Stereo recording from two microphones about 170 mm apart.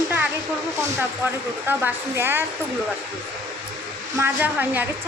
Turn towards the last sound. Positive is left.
turn(degrees=-10)  # may be behind; listen again after turning